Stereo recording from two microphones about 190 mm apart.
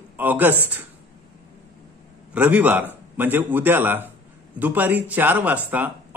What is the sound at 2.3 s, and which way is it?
A man's voice, 5° right (ahead or behind).